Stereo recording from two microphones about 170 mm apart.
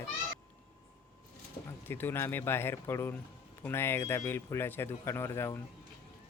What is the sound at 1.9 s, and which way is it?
Speech, 10° left (ahead or behind).